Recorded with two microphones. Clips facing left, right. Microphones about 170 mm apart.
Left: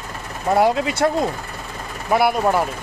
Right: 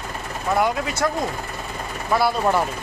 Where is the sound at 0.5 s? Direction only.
30° left (ahead or behind).